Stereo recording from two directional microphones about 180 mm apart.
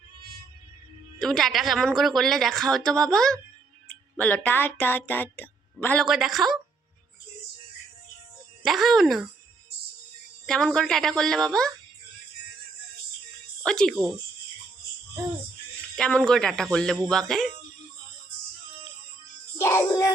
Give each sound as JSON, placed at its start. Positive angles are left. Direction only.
{"t": 1.2, "sound": "a woman's voice", "side_deg": 0}
{"t": 8.6, "sound": "a woman's voice", "side_deg": 0}
{"t": 10.4, "sound": "a woman's voice", "side_deg": 0}
{"t": 13.7, "sound": "a woman's voice", "side_deg": 5}
{"t": 16.0, "sound": "a woman's voice", "side_deg": 5}
{"t": 19.5, "sound": "music", "side_deg": 15}